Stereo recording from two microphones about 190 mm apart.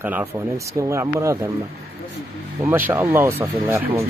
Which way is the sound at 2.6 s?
10° right (ahead or behind).